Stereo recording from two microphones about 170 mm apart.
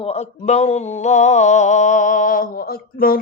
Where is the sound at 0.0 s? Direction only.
40° left (ahead or behind).